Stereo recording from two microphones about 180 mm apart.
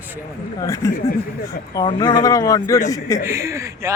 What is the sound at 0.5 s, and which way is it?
Speech, 20° left (ahead or behind).